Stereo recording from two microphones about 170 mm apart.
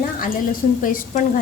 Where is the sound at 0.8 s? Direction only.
55° left (ahead or behind).